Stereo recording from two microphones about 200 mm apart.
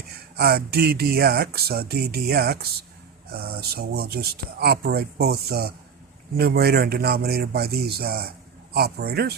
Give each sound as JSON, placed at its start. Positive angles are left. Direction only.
{"t": 0.3, "sound": "speech", "side_deg": -50}